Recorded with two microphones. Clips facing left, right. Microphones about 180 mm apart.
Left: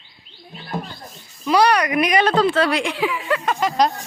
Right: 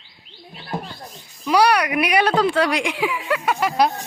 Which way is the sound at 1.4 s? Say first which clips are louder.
Even; 10° right (ahead or behind).